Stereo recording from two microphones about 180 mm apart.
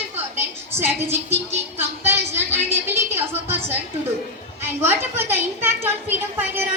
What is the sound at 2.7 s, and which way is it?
A woman's voice, 10° right (ahead or behind).